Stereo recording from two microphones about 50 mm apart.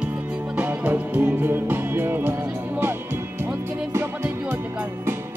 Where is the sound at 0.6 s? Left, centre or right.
Right.